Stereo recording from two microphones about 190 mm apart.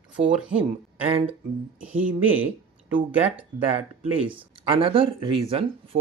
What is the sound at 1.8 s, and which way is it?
Speech, 10° right (ahead or behind).